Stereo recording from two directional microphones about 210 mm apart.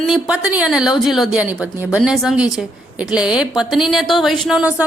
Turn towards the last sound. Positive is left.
turn(degrees=-5)  # may be behind; listen again after turning